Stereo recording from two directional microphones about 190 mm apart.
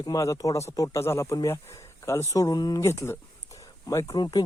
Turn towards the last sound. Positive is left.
turn(degrees=20)  # may be behind; listen again after turning